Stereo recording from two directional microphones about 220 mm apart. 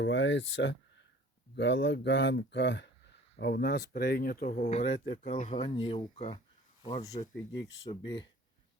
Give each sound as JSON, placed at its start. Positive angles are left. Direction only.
{"t": 0.0, "sound": "speech", "side_deg": 55}